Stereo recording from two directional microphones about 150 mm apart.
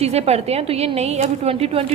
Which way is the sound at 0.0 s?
45° right (ahead or behind).